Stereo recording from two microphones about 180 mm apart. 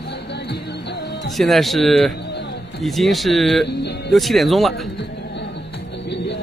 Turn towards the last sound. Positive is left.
turn(degrees=0)  # may be behind; listen again after turning